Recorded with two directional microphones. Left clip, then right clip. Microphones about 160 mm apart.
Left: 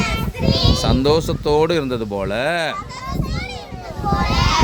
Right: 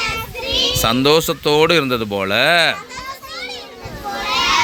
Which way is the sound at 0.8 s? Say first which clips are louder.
Right 5 dB; 5° left (ahead or behind).